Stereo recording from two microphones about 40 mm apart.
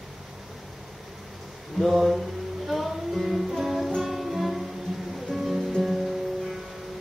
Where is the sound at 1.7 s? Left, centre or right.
Centre.